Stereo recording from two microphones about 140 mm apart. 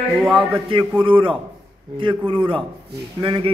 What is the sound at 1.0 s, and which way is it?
A man's voice, 40° right (ahead or behind).